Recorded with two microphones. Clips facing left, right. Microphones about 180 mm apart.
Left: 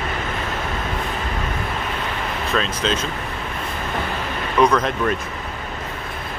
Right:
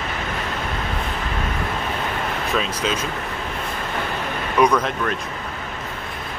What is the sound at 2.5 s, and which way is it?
Speech, 5° right (ahead or behind).